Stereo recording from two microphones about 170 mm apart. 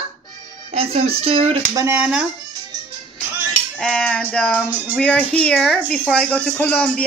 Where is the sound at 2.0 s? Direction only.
5° right (ahead or behind).